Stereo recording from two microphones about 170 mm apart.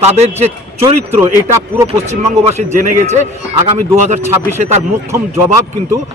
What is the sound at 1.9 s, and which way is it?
A man's voice, 40° right (ahead or behind).